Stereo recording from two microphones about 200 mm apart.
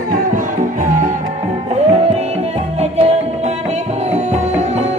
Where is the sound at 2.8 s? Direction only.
30° right (ahead or behind).